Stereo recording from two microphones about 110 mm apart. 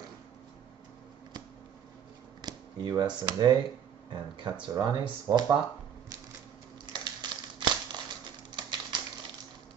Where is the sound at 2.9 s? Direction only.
35° right (ahead or behind).